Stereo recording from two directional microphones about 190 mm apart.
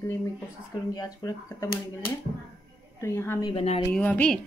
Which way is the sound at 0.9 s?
20° left (ahead or behind).